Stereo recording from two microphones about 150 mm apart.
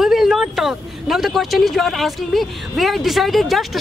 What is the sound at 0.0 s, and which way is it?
Speech, centre (ahead or behind).